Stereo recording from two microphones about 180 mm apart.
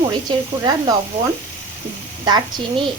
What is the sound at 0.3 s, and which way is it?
Speech, 20° right (ahead or behind).